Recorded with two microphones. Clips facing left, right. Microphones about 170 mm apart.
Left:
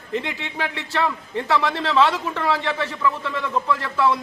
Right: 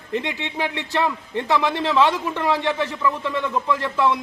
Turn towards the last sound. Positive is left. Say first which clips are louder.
# even
turn(degrees=-15)  # may be behind; listen again after turning